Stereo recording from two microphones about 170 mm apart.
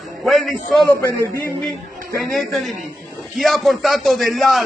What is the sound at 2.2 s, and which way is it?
Speech, centre (ahead or behind).